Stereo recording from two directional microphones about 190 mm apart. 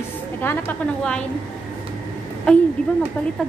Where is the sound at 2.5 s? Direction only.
5° left (ahead or behind).